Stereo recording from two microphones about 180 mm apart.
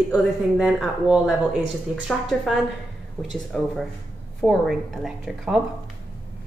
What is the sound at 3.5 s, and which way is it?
Speech, centre (ahead or behind).